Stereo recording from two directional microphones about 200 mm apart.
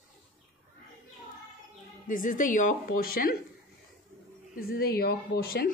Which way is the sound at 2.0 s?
40° left (ahead or behind).